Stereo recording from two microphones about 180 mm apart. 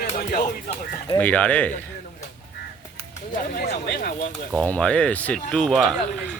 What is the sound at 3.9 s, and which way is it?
Speech, 55° left (ahead or behind).